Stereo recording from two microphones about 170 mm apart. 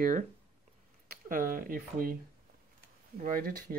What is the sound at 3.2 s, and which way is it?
Speech, 60° right (ahead or behind).